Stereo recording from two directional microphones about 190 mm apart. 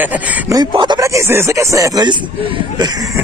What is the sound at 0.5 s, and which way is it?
Speech, 25° right (ahead or behind).